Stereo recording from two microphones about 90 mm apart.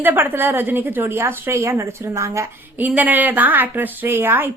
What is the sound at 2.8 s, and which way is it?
A woman's voice, 20° right (ahead or behind).